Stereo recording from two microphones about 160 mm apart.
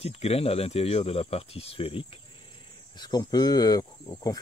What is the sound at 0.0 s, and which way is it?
Speech, 40° left (ahead or behind).